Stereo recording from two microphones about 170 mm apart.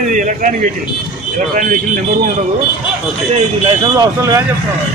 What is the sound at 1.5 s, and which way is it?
Speech, 50° right (ahead or behind).